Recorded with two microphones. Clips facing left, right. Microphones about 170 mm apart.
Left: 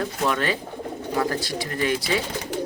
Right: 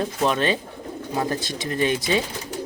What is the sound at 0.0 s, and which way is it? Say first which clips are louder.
Speech: right 2 dB; 20° right (ahead or behind).